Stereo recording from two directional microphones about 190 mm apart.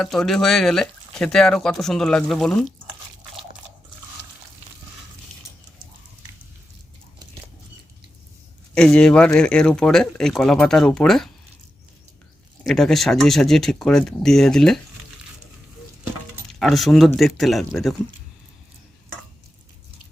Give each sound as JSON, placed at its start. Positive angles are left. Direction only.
{"t": 0.0, "sound": "speech", "side_deg": 0}
{"t": 8.7, "sound": "speech", "side_deg": 5}
{"t": 12.6, "sound": "speech", "side_deg": 0}
{"t": 16.3, "sound": "speech", "side_deg": 0}